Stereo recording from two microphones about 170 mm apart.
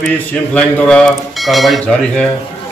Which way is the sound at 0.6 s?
5° left (ahead or behind).